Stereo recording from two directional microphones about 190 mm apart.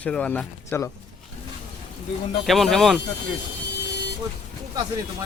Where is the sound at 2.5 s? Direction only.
Centre (ahead or behind).